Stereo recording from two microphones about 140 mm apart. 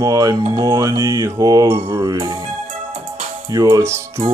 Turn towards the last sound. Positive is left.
turn(degrees=-20)  # may be behind; listen again after turning